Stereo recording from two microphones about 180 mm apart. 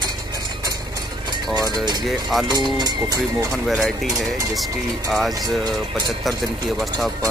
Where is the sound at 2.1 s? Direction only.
Centre (ahead or behind).